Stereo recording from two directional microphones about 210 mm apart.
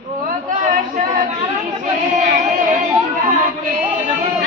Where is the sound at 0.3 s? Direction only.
40° right (ahead or behind).